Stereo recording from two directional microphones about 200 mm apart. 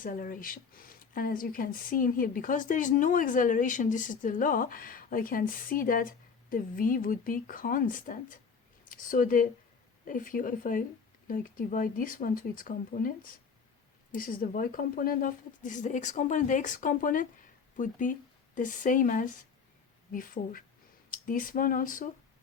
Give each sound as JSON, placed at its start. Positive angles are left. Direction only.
{"t": 0.0, "sound": "a woman's voice", "side_deg": 45}